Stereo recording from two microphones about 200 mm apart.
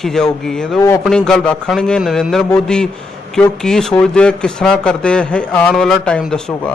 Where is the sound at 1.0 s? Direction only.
5° left (ahead or behind).